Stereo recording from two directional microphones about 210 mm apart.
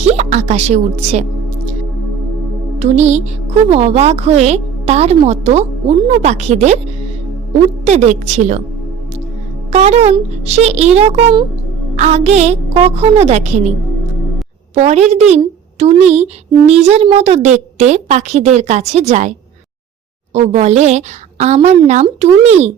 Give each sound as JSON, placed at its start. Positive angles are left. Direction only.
{"t": 0.0, "sound": "speech", "side_deg": -35}
{"t": 2.7, "sound": "speech", "side_deg": -30}
{"t": 7.9, "sound": "speech", "side_deg": -35}
{"t": 9.7, "sound": "speech", "side_deg": -30}
{"t": 14.8, "sound": "speech", "side_deg": -30}
{"t": 20.3, "sound": "speech", "side_deg": -30}